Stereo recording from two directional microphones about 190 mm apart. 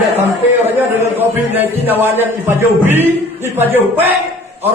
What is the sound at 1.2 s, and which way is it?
A man's voice, 10° right (ahead or behind).